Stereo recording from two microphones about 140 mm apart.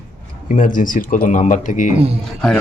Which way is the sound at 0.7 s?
70° left (ahead or behind).